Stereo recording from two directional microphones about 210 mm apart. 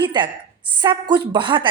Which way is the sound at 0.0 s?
20° right (ahead or behind).